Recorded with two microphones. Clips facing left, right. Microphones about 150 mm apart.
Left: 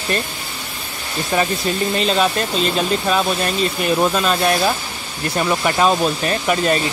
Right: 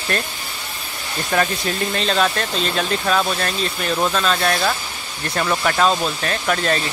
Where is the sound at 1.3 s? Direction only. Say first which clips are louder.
Left 1 dB; 5° left (ahead or behind).